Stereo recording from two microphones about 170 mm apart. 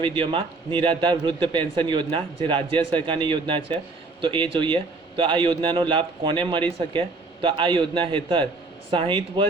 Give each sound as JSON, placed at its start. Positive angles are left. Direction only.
{"t": 0.0, "sound": "a man's voice", "side_deg": -30}